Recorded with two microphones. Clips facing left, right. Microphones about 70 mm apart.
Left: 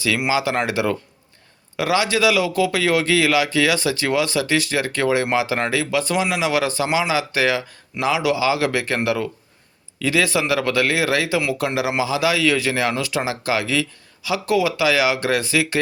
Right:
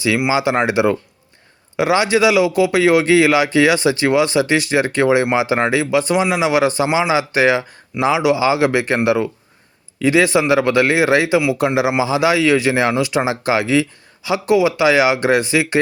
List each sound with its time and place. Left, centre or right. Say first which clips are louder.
0.3 s a man's voice: right 4 dB; right